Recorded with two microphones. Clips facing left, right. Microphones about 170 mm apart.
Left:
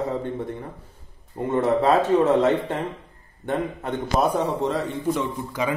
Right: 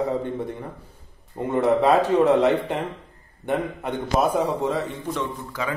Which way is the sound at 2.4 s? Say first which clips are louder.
Even; 15° right (ahead or behind).